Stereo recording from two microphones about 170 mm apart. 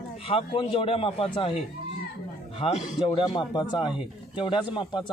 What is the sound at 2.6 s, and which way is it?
A man's voice, 30° left (ahead or behind).